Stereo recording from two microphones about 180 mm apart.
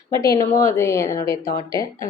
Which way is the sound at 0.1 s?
20° left (ahead or behind).